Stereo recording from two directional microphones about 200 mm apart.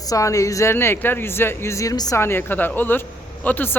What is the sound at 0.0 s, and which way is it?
A man's voice, 15° left (ahead or behind).